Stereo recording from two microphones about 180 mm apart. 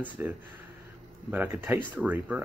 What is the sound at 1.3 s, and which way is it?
Speech, 10° right (ahead or behind).